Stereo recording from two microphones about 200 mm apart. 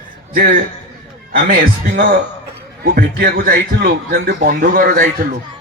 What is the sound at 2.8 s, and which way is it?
A man's voice, 50° right (ahead or behind).